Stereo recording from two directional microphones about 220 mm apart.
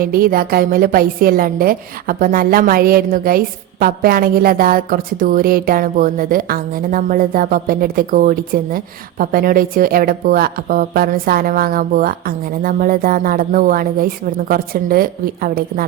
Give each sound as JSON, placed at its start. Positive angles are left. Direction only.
{"t": 0.0, "sound": "a woman's voice", "side_deg": -40}